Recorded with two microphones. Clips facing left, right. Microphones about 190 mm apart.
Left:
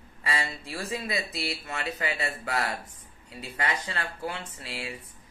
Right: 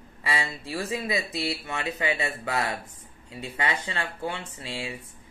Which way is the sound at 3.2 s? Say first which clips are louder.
Right 2 dB; 25° right (ahead or behind).